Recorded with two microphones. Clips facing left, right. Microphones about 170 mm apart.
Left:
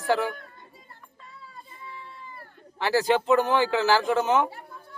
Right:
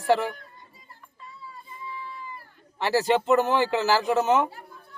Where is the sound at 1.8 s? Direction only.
60° left (ahead or behind).